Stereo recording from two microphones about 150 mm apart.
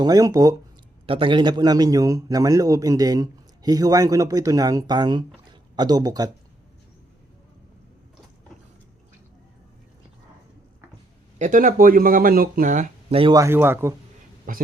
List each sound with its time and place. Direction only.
0.0 s a man's voice: 25° right (ahead or behind)
1.0 s a man's voice: 35° right (ahead or behind)
11.3 s speech: 60° right (ahead or behind)
13.1 s speech: 40° right (ahead or behind)
13.3 s a man's voice: 20° right (ahead or behind)
14.5 s speech: 70° right (ahead or behind)